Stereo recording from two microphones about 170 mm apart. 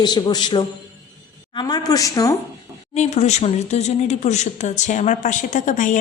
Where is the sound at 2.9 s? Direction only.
40° left (ahead or behind).